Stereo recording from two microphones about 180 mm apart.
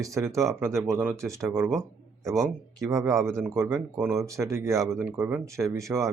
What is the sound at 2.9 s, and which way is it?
Speech, 15° right (ahead or behind).